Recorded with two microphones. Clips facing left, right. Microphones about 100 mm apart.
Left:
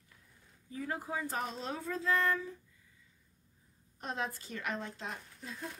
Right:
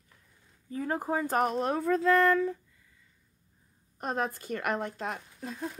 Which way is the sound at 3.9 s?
50° right (ahead or behind).